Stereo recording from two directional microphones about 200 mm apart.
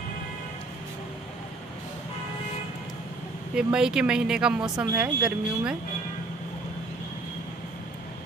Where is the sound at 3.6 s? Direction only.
5° right (ahead or behind).